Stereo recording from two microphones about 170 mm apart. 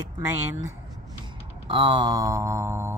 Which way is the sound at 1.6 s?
30° right (ahead or behind).